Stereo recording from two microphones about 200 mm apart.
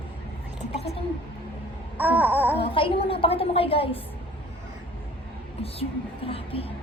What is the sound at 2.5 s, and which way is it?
A woman's voice, 25° left (ahead or behind).